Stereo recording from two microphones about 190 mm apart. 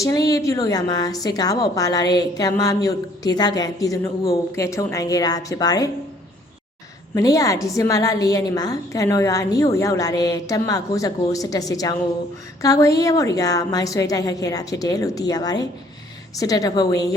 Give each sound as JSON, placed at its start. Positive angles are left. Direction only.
{"t": 0.0, "sound": "a woman's voice", "side_deg": 20}
{"t": 7.1, "sound": "a woman's voice", "side_deg": 20}